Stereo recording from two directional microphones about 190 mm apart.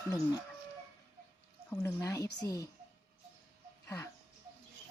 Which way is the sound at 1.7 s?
15° left (ahead or behind).